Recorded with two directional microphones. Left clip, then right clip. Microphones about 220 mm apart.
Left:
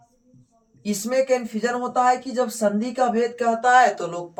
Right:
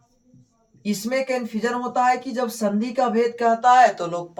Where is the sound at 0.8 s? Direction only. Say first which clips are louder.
Left 3 dB; 20° right (ahead or behind).